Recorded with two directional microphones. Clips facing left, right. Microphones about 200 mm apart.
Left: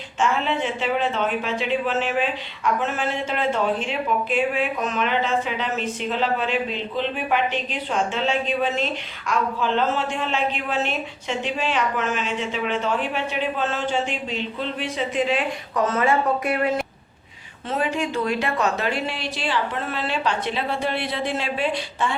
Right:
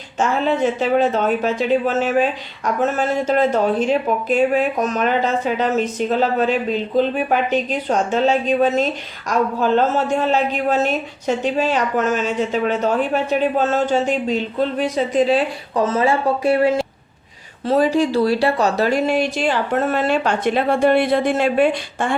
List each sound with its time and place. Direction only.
0.2 s speech: 40° right (ahead or behind)